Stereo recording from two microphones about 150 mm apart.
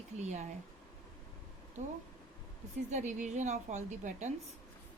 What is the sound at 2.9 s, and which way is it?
A woman's voice, 50° right (ahead or behind).